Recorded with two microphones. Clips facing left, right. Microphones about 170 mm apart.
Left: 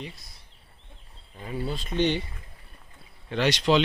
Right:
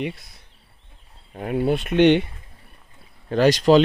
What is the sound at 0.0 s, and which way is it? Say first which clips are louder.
Speech: right 12 dB; 65° right (ahead or behind).